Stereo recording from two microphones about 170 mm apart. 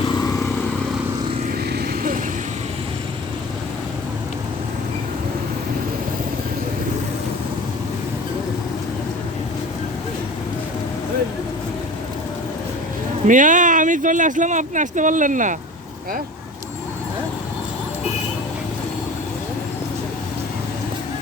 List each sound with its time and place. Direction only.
1.7 s vehicle: 70° right (ahead or behind)
13.2 s speech: 50° right (ahead or behind)